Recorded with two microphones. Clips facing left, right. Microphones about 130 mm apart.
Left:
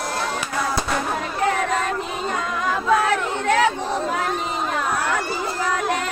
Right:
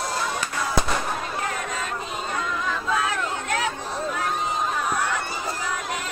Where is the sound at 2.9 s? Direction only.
65° left (ahead or behind).